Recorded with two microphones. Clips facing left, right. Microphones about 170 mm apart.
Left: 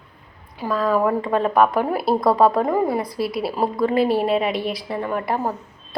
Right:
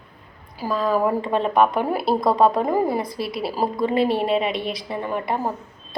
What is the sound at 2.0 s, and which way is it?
A woman's voice, 5° left (ahead or behind).